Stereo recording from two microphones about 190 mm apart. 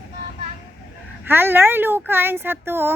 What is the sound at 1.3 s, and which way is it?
Speech, 10° right (ahead or behind).